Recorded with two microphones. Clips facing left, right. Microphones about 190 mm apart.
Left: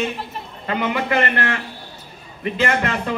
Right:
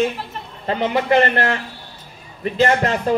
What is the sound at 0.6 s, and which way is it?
Speech, 35° right (ahead or behind).